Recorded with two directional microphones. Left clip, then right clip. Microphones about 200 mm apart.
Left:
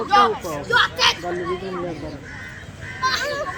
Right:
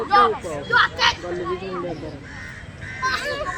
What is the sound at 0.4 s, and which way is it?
Speech, 35° left (ahead or behind).